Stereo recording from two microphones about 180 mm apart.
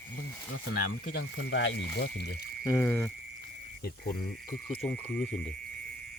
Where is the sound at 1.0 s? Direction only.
75° left (ahead or behind).